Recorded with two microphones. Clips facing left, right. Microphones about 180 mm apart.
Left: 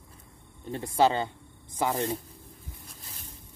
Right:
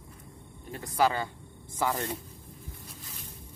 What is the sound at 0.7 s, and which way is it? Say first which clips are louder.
Speech: left 3 dB; 25° left (ahead or behind).